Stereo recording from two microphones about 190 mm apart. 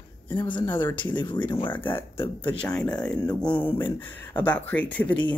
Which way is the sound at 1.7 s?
10° left (ahead or behind).